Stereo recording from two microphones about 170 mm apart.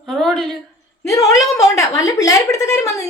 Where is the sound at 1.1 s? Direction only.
20° left (ahead or behind).